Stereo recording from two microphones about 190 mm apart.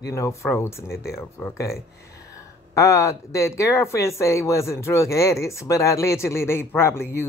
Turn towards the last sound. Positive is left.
turn(degrees=10)  # may be behind; listen again after turning